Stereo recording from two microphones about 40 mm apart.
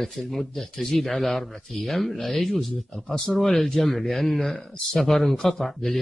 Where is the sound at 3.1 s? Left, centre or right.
Centre.